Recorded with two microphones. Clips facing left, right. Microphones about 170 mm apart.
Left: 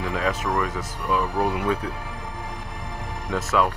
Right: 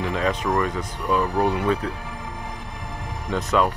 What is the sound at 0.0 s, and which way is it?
Speech, 5° left (ahead or behind).